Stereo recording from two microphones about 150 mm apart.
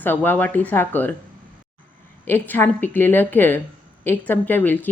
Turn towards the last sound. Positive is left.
turn(degrees=10)  # may be behind; listen again after turning